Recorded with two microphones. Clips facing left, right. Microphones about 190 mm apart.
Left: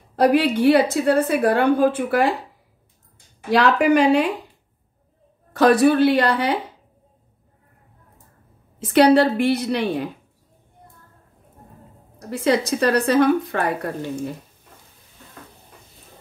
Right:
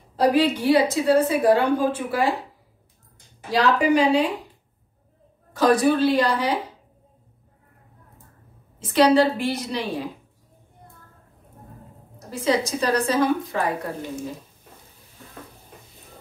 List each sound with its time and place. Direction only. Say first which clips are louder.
0.1 s a woman's voice: left 2 dB; 60° left (ahead or behind)
3.4 s a woman's voice: left 3 dB; 65° left (ahead or behind)
5.5 s a woman's voice: left 3 dB; 65° left (ahead or behind)
8.7 s a woman's voice: left 3 dB; 60° left (ahead or behind)
12.3 s a woman's voice: left 3 dB; 65° left (ahead or behind)